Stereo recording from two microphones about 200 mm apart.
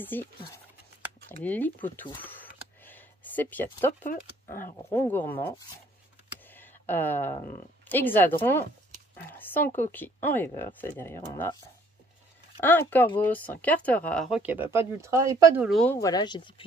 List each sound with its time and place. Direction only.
0.0 s speech: 10° left (ahead or behind)
1.3 s speech: 10° left (ahead or behind)
2.8 s a sound: 10° left (ahead or behind)
4.1 s speech: 45° left (ahead or behind)
4.8 s speech: 10° left (ahead or behind)
6.4 s a sound: 10° left (ahead or behind)
7.9 s speech: 10° left (ahead or behind)
12.5 s speech: 10° left (ahead or behind); by 15.6 s 15° right (ahead or behind)
15.6 s speech: centre (ahead or behind)
15.9 s speech: 15° left (ahead or behind)